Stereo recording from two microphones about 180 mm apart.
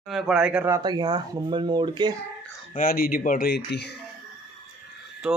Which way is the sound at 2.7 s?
55° left (ahead or behind).